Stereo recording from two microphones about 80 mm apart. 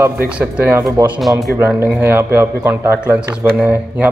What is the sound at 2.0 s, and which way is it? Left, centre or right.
A man's voice, right.